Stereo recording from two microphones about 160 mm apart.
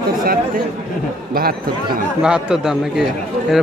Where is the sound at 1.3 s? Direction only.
70° right (ahead or behind).